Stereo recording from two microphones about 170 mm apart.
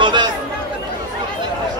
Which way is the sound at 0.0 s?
25° right (ahead or behind).